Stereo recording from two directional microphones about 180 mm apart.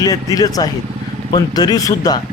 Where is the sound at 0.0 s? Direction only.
20° left (ahead or behind).